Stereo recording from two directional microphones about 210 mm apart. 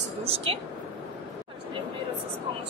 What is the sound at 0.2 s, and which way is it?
Speech, 25° right (ahead or behind).